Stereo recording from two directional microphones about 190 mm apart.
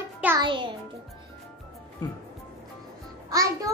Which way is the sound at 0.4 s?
25° right (ahead or behind).